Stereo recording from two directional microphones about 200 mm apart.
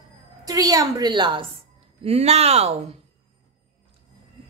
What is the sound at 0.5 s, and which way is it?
A woman's voice, 20° right (ahead or behind).